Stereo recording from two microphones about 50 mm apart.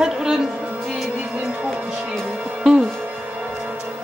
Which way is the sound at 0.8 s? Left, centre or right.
Centre.